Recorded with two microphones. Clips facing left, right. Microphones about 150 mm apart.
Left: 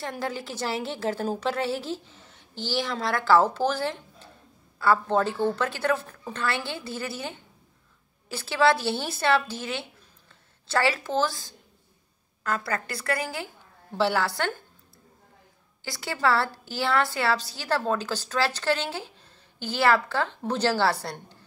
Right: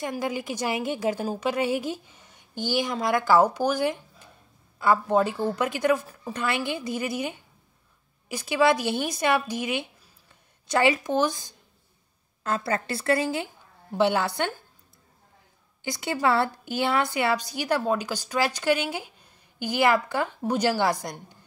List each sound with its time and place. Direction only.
0.0 s a woman's voice: 15° right (ahead or behind)
15.8 s a woman's voice: 20° right (ahead or behind)